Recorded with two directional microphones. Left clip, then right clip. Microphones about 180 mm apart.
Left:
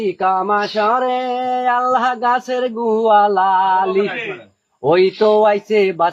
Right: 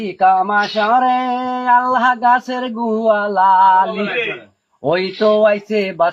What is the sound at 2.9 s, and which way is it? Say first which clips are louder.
Speech: left 3 dB; 15° left (ahead or behind).